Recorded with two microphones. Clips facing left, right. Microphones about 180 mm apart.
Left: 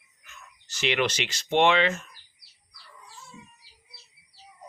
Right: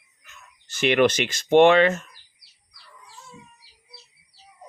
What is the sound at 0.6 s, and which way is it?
Speech, 55° right (ahead or behind).